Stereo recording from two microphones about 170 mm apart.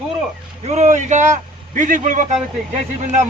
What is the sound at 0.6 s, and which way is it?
A man's voice, 40° right (ahead or behind).